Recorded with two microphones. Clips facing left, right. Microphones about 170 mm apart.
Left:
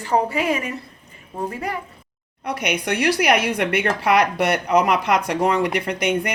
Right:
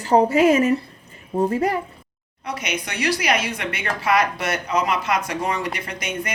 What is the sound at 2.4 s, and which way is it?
Speech, 60° left (ahead or behind).